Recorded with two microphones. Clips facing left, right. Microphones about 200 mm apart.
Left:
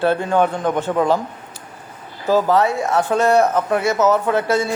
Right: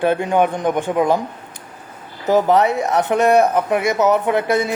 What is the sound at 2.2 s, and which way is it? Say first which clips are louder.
Speech: right 1 dB; 20° right (ahead or behind).